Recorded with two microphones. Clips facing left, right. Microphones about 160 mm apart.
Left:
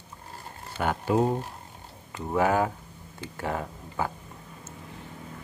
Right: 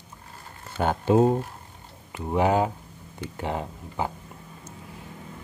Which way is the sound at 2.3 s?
20° right (ahead or behind).